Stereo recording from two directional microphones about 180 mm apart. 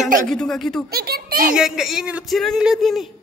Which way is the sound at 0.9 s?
60° right (ahead or behind).